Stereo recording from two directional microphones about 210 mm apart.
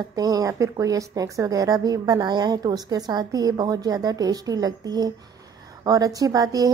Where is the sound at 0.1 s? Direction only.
15° right (ahead or behind).